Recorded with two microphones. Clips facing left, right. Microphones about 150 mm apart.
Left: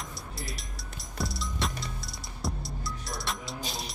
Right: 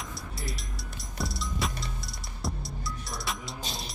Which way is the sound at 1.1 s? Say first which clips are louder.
Even; centre (ahead or behind).